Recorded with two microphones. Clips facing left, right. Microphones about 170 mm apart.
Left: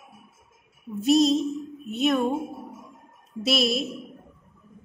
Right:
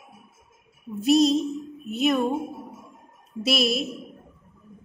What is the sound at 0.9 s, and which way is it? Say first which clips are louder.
A woman's voice: right 1 dB; centre (ahead or behind).